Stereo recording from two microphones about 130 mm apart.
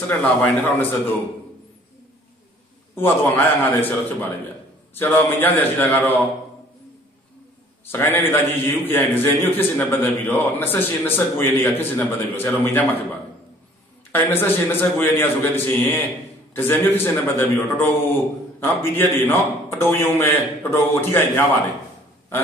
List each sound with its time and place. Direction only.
0.2 s a man's voice: 15° left (ahead or behind)
3.0 s a man's voice: 15° left (ahead or behind)
7.8 s a man's voice: 15° left (ahead or behind)
14.1 s a man's voice: 15° left (ahead or behind)